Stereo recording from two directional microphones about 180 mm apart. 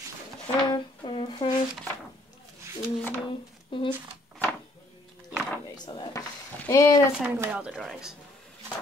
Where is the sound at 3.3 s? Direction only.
30° left (ahead or behind).